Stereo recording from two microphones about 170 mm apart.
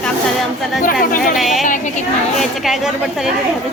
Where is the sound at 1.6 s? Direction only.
50° left (ahead or behind).